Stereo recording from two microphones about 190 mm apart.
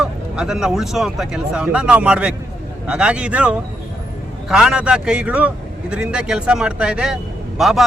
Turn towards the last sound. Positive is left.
turn(degrees=0)  # may be behind; listen again after turning